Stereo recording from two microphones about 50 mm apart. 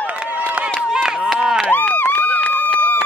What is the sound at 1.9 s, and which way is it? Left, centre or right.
Run, left.